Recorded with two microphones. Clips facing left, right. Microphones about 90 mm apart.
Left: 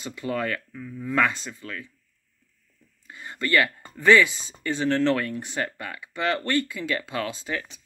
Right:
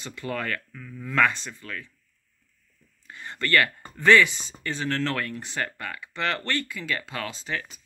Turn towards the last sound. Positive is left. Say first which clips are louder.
# left 3 dB
turn(degrees=25)  # may be behind; listen again after turning